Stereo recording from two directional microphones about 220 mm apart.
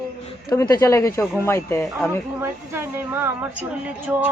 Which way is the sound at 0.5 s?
15° left (ahead or behind).